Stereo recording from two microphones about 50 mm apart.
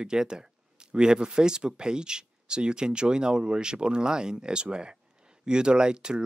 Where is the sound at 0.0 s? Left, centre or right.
Centre.